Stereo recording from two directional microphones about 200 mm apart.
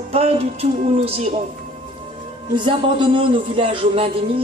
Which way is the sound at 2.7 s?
25° right (ahead or behind).